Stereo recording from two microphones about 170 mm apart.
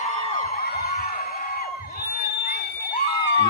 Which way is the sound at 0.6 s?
65° left (ahead or behind).